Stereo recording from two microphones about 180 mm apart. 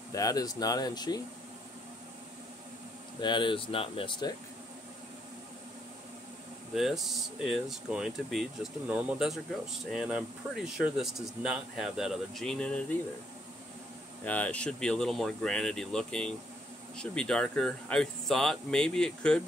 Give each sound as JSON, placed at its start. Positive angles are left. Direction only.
{"t": 0.1, "sound": "speech", "side_deg": 20}
{"t": 3.2, "sound": "speech", "side_deg": 25}
{"t": 6.7, "sound": "speech", "side_deg": 0}
{"t": 14.2, "sound": "speech", "side_deg": 10}